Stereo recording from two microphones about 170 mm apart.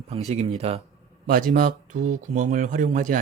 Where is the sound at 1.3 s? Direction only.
55° right (ahead or behind).